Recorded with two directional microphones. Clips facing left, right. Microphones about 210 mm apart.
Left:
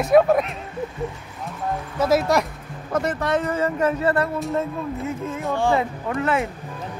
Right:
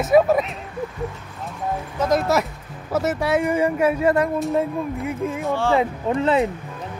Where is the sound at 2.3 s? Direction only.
5° right (ahead or behind).